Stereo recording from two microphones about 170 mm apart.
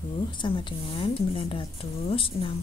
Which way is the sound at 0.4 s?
30° left (ahead or behind).